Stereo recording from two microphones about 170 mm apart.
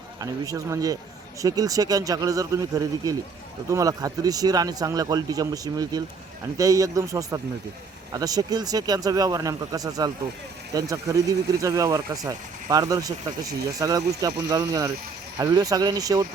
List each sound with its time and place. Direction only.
0.2 s speech: 20° right (ahead or behind)